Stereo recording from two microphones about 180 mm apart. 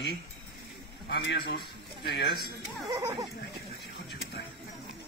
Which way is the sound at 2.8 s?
20° right (ahead or behind).